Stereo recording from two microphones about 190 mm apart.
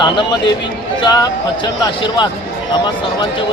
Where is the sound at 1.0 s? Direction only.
20° left (ahead or behind).